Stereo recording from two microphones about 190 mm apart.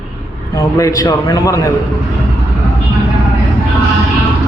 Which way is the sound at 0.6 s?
15° left (ahead or behind).